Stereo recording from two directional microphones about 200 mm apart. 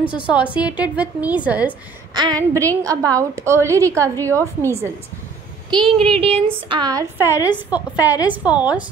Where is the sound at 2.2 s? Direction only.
20° right (ahead or behind).